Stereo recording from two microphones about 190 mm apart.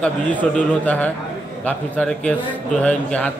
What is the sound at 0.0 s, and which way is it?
A man's voice, 5° left (ahead or behind).